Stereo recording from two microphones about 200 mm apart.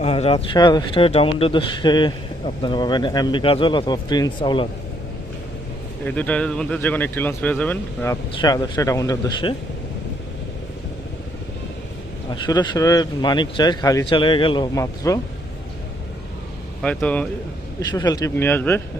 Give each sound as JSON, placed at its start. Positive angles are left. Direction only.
{"t": 0.0, "sound": "speech", "side_deg": 30}
{"t": 6.1, "sound": "speech", "side_deg": 5}
{"t": 12.3, "sound": "speech", "side_deg": 20}
{"t": 16.8, "sound": "speech", "side_deg": 5}
{"t": 17.7, "sound": "speech", "side_deg": 20}